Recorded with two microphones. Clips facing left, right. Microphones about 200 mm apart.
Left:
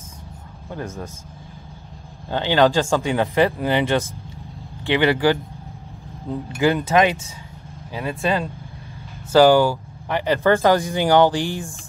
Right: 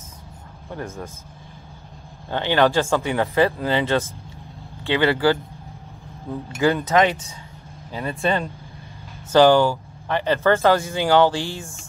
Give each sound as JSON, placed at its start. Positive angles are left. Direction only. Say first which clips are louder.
{"t": 0.7, "sound": "speech", "louder": "left 1 dB", "side_deg": 15}
{"t": 2.2, "sound": "speech", "louder": "left 2 dB", "side_deg": 15}
{"t": 8.2, "sound": "speech", "louder": "even", "side_deg": 5}